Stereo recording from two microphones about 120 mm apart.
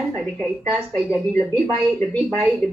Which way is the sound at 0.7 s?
Centre (ahead or behind).